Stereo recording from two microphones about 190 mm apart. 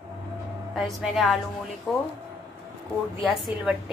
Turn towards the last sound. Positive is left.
turn(degrees=0)  # may be behind; listen again after turning